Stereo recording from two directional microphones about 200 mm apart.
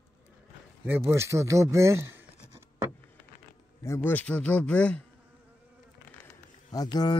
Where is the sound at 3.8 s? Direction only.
10° left (ahead or behind).